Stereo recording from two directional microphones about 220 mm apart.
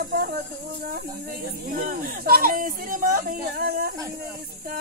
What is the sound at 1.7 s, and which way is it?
Speech, 40° right (ahead or behind).